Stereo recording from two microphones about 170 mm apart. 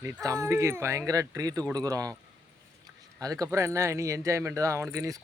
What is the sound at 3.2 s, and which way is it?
Speech, 20° right (ahead or behind).